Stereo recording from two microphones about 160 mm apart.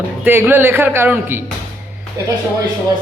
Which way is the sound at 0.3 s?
15° right (ahead or behind).